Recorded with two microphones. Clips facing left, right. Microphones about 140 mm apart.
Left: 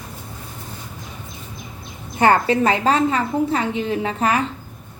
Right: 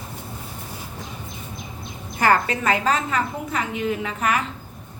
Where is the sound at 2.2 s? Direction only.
25° left (ahead or behind).